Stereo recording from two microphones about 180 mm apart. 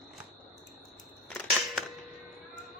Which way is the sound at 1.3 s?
5° left (ahead or behind).